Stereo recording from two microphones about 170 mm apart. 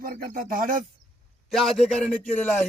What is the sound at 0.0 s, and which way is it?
Speech, 60° right (ahead or behind).